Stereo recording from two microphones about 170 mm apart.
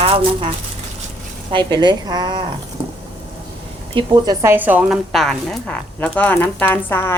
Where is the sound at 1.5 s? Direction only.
25° right (ahead or behind).